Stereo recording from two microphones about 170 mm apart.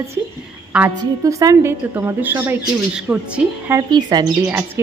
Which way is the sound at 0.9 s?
20° right (ahead or behind).